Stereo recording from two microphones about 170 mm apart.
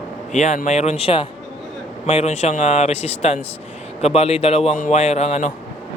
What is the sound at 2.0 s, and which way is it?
Speech, 40° left (ahead or behind).